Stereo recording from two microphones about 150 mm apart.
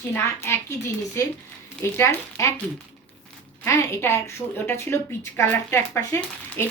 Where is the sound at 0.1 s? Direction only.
15° left (ahead or behind).